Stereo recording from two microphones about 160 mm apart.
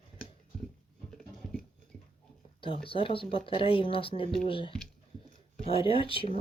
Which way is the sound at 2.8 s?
35° left (ahead or behind).